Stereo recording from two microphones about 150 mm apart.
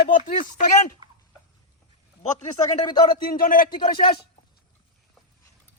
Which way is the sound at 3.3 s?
75° left (ahead or behind).